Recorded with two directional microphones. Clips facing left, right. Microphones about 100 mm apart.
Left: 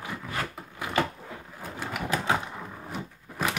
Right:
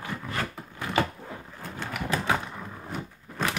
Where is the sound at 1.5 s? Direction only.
15° left (ahead or behind).